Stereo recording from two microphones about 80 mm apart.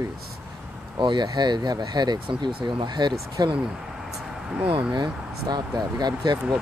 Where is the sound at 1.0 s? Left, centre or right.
Right.